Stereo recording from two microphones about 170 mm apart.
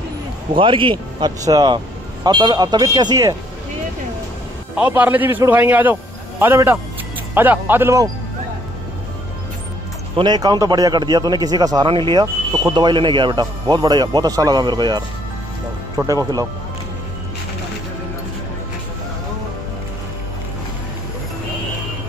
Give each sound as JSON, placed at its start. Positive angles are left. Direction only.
{"t": 0.6, "sound": "speech", "side_deg": -30}
{"t": 4.7, "sound": "a man's voice", "side_deg": -10}
{"t": 10.1, "sound": "speech", "side_deg": -25}
{"t": 16.1, "sound": "speech", "side_deg": -20}